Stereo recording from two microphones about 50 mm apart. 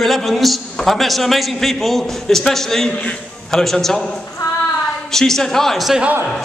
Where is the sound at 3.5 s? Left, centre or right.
Centre.